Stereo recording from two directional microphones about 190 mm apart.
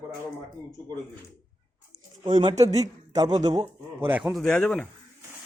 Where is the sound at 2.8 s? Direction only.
20° right (ahead or behind).